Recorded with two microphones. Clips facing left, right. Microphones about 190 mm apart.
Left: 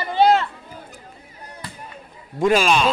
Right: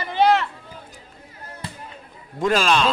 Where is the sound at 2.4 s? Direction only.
10° left (ahead or behind).